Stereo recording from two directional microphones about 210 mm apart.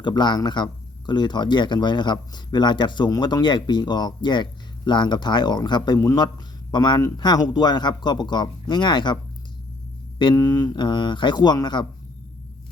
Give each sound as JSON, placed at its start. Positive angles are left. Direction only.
{"t": 0.0, "sound": "speech", "side_deg": 20}
{"t": 10.2, "sound": "speech", "side_deg": 20}